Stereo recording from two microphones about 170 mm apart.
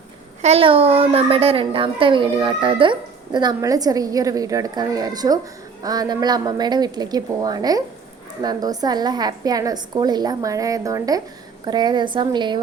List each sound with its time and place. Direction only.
0.4 s a woman's voice: 35° right (ahead or behind)